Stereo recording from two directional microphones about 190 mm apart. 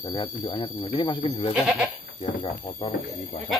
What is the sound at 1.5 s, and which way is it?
Goat, 5° right (ahead or behind).